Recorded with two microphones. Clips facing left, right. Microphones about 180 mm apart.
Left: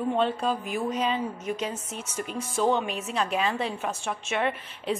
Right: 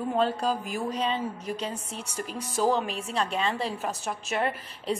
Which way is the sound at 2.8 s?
35° right (ahead or behind).